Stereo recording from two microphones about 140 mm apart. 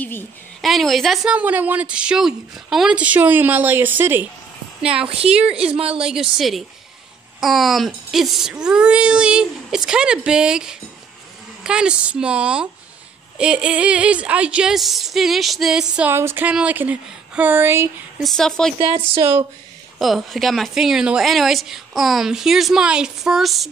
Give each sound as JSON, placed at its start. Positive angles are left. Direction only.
{"t": 0.6, "sound": "speech", "side_deg": 0}
{"t": 5.0, "sound": "a woman's voice", "side_deg": -45}
{"t": 5.3, "sound": "speech", "side_deg": -5}
{"t": 5.7, "sound": "a woman's voice", "side_deg": -45}
{"t": 5.9, "sound": "a woman's voice", "side_deg": -5}
{"t": 16.1, "sound": "speech", "side_deg": -15}
{"t": 18.2, "sound": "a woman's voice", "side_deg": 5}
{"t": 18.8, "sound": "speech", "side_deg": -40}
{"t": 19.1, "sound": "speech", "side_deg": -20}
{"t": 20.0, "sound": "a woman's voice", "side_deg": 0}